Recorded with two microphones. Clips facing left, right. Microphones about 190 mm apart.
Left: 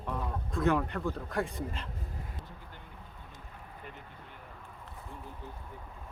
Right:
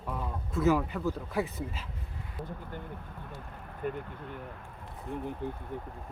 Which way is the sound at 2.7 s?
50° right (ahead or behind).